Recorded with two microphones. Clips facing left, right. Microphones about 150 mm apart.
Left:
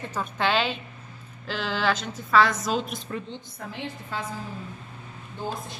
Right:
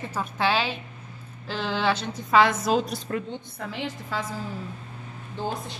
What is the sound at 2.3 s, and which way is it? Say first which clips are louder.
Speech: right 2 dB; 30° right (ahead or behind).